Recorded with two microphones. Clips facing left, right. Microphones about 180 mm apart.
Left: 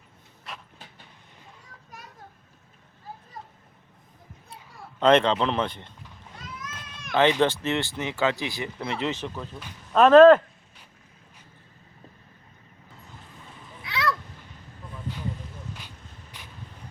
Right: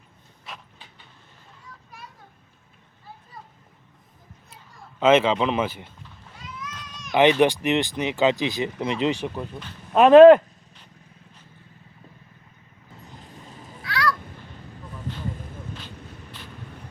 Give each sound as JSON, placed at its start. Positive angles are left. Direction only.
{"t": 0.5, "sound": "vehicle", "side_deg": 0}
{"t": 4.9, "sound": "speech", "side_deg": -5}
{"t": 6.4, "sound": "a sound", "side_deg": 45}
{"t": 7.1, "sound": "speech", "side_deg": -15}
{"t": 13.8, "sound": "honk", "side_deg": 20}